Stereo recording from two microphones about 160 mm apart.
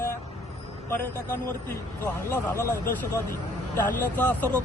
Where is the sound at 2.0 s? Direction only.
10° left (ahead or behind).